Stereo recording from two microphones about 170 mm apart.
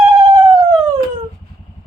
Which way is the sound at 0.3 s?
25° right (ahead or behind).